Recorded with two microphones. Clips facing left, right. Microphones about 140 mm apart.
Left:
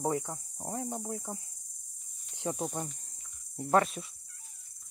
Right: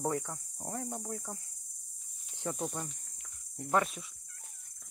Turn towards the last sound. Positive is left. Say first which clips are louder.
# left 4 dB
turn(degrees=35)  # may be behind; listen again after turning